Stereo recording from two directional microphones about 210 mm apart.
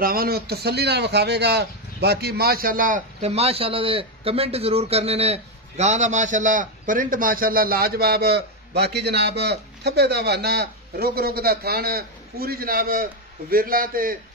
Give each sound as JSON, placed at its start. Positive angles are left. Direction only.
{"t": 0.0, "sound": "a man's voice", "side_deg": -45}